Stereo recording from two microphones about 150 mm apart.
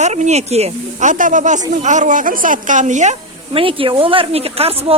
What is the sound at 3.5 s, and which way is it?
Speech, 35° right (ahead or behind).